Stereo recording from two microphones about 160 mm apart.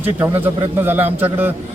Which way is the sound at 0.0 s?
10° right (ahead or behind).